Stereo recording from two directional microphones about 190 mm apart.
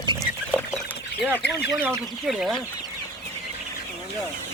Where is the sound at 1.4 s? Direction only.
65° left (ahead or behind).